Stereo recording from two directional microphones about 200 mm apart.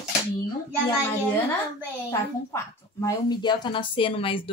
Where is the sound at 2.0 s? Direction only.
15° left (ahead or behind).